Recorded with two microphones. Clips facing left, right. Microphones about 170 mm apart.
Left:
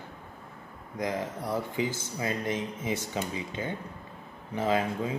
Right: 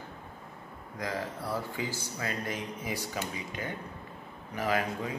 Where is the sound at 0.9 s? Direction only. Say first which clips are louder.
Left 4 dB; 20° left (ahead or behind).